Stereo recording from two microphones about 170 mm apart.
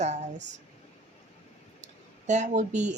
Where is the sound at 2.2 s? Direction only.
45° right (ahead or behind).